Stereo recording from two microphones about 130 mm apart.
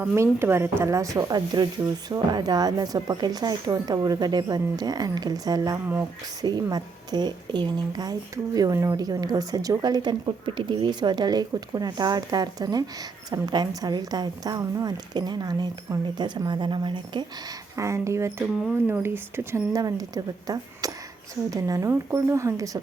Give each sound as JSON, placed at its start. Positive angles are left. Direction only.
{"t": 0.0, "sound": "speech", "side_deg": -15}
{"t": 17.7, "sound": "speech", "side_deg": -25}